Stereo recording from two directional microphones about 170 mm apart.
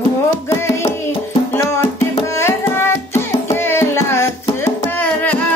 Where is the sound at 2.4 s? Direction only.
15° left (ahead or behind).